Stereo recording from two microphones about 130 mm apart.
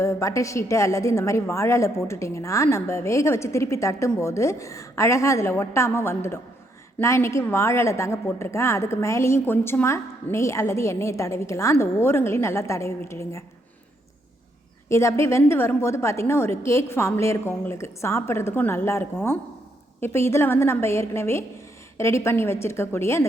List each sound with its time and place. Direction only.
0.0 s a woman's voice: 25° left (ahead or behind)
14.8 s a woman's voice: 20° left (ahead or behind)